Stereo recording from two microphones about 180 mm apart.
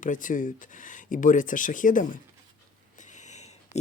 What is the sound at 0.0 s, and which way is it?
Speech, 45° left (ahead or behind).